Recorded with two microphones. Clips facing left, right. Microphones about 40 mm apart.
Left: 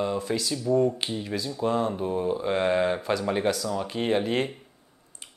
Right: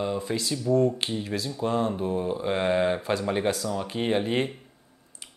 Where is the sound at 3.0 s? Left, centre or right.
Right.